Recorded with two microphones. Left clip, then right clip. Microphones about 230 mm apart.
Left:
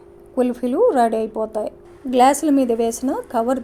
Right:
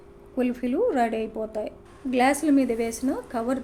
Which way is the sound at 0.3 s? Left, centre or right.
Left.